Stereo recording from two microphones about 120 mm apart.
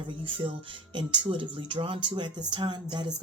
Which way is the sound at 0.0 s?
45° right (ahead or behind).